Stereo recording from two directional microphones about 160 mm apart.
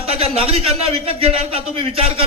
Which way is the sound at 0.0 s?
40° right (ahead or behind).